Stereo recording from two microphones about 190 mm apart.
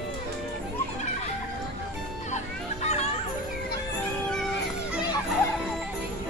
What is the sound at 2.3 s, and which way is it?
Music, 35° left (ahead or behind).